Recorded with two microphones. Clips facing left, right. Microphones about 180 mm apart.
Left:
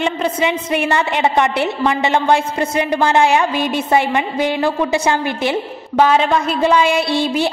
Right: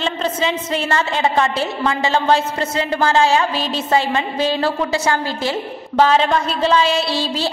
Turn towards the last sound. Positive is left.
turn(degrees=20)  # may be behind; listen again after turning